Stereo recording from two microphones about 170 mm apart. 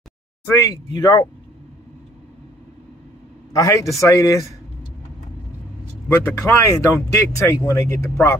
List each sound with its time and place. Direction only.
0.5 s speech: 20° left (ahead or behind)
3.5 s speech: 20° left (ahead or behind)
6.0 s speech: 10° left (ahead or behind)